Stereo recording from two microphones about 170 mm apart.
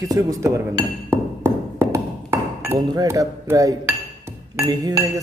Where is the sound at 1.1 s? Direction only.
10° right (ahead or behind).